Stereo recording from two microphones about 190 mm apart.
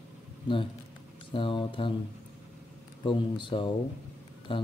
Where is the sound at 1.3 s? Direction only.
25° left (ahead or behind).